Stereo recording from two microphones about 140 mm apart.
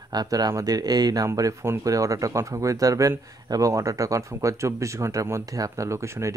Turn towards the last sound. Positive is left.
turn(degrees=-20)  # may be behind; listen again after turning